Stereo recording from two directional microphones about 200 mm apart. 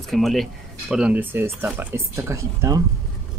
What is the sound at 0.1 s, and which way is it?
Speech, centre (ahead or behind).